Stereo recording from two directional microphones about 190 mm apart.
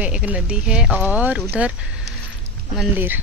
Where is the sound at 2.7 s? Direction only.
10° right (ahead or behind).